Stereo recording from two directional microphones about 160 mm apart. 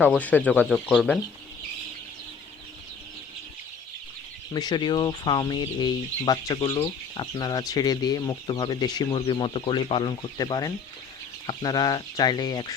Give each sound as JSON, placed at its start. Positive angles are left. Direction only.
{"t": 0.0, "sound": "speech", "side_deg": 10}
{"t": 4.5, "sound": "speech", "side_deg": 25}